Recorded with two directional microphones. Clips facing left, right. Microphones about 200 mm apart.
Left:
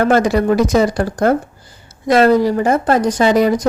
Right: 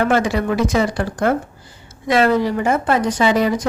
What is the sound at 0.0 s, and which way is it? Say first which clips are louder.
Speech: left 4 dB; 40° left (ahead or behind).